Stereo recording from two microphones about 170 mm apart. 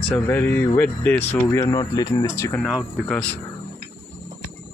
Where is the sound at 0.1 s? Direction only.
10° left (ahead or behind).